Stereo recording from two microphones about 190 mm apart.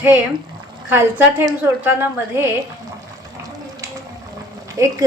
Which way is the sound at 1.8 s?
10° right (ahead or behind).